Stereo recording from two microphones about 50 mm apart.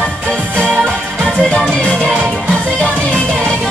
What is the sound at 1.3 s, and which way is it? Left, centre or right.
Music, left.